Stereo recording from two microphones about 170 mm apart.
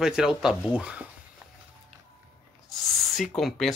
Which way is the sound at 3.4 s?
Centre (ahead or behind).